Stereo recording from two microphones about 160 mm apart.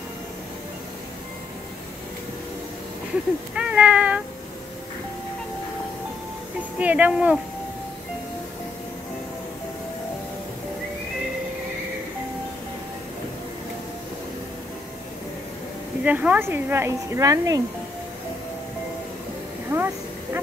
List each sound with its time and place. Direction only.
3.5 s speech: 5° right (ahead or behind)
6.8 s speech: 10° right (ahead or behind)
16.0 s speech: 10° right (ahead or behind)
19.7 s vehicle: 15° right (ahead or behind)